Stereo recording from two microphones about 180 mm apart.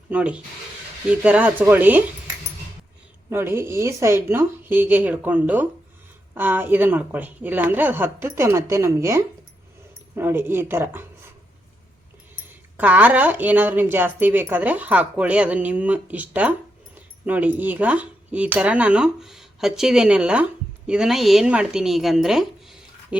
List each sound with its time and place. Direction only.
0.1 s a woman's voice: 5° right (ahead or behind)
3.2 s a woman's voice: 15° right (ahead or behind)
12.7 s a woman's voice: 10° right (ahead or behind)